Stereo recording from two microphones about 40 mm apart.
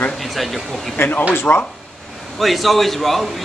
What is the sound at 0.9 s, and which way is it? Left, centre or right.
Speech, left.